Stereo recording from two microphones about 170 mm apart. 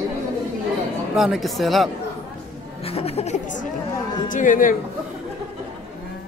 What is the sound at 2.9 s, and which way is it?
Speech, 35° left (ahead or behind).